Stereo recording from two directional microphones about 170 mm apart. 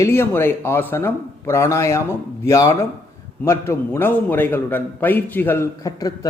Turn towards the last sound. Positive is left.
turn(degrees=15)  # may be behind; listen again after turning